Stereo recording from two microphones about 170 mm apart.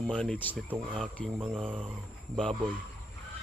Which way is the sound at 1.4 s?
30° right (ahead or behind).